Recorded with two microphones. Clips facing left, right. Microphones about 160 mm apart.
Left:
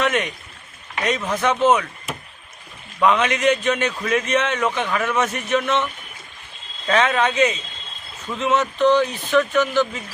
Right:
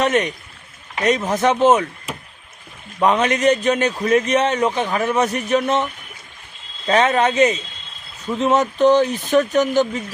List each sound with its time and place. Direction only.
0.0 s a man's voice: 40° right (ahead or behind)
3.0 s a man's voice: 40° right (ahead or behind)